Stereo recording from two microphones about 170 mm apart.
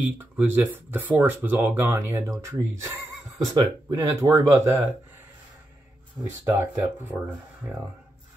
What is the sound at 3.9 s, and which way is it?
Speech, 20° right (ahead or behind).